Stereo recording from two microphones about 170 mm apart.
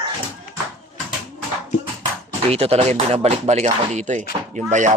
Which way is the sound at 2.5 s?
35° right (ahead or behind).